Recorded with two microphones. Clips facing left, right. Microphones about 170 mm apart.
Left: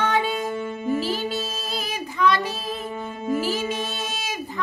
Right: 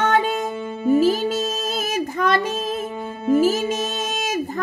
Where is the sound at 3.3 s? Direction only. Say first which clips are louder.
Right 7 dB; 45° right (ahead or behind).